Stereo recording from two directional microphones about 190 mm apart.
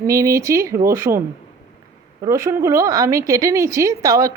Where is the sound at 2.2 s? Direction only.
15° right (ahead or behind).